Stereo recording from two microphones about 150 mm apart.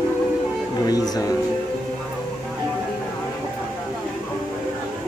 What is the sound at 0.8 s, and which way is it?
Music, 25° left (ahead or behind).